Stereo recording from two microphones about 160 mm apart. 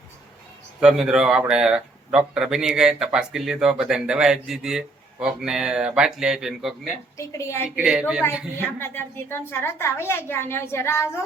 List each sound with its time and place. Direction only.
0.8 s speech: 5° right (ahead or behind)
7.2 s a woman's voice: 20° left (ahead or behind)
7.8 s speech: 5° right (ahead or behind)
8.6 s a woman's voice: 15° left (ahead or behind)